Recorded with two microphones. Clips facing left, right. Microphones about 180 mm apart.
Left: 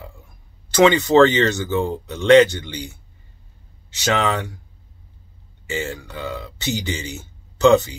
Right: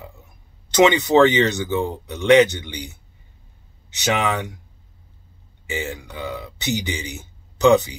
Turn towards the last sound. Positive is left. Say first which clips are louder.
# left 1 dB
turn(degrees=-15)  # may be behind; listen again after turning